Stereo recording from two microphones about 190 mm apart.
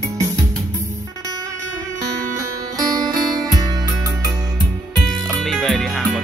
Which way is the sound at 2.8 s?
20° right (ahead or behind).